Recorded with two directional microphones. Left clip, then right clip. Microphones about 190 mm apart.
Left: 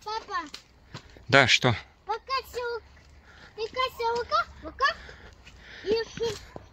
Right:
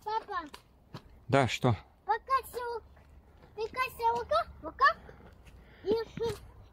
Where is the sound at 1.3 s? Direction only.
10° right (ahead or behind).